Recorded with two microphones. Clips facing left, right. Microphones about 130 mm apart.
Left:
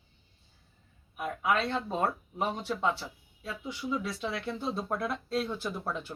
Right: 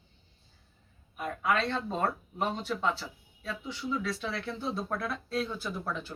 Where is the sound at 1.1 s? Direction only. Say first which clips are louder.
Even; 10° left (ahead or behind).